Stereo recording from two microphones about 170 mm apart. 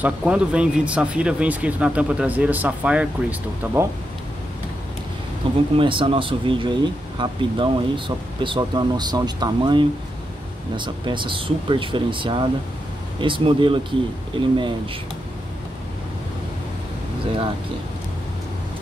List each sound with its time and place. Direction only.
0.0 s speech: 5° right (ahead or behind)
5.4 s speech: 30° right (ahead or behind)